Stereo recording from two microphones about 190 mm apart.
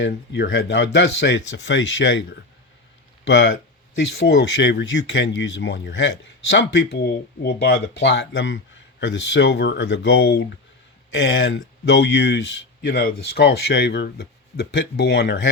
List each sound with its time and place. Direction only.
0.0 s speech: 65° left (ahead or behind)
3.2 s speech: 70° left (ahead or behind)